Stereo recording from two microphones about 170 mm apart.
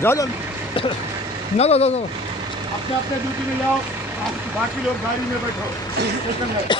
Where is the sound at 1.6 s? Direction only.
40° left (ahead or behind).